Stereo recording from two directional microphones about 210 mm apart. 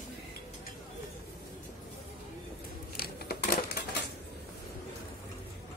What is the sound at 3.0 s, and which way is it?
Scissors, 45° left (ahead or behind).